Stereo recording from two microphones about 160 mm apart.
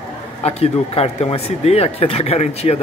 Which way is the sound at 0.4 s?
40° left (ahead or behind).